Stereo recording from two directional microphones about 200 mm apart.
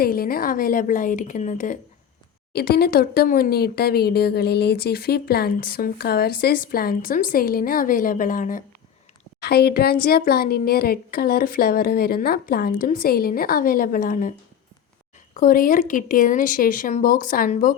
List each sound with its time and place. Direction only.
0.0 s speech: 50° left (ahead or behind)
2.5 s speech: 50° left (ahead or behind)
9.4 s speech: 55° left (ahead or behind)
15.4 s speech: 45° left (ahead or behind)